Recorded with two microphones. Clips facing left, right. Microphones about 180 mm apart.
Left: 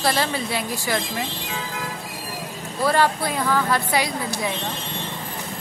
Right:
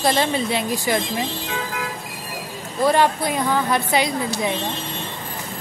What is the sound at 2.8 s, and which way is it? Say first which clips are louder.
Speech: right 2 dB; 20° right (ahead or behind).